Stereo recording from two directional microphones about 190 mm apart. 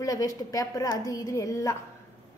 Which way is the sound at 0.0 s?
20° left (ahead or behind).